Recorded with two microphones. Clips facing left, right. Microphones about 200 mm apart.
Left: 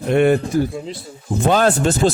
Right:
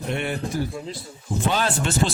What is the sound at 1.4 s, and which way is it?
Speech, 45° left (ahead or behind).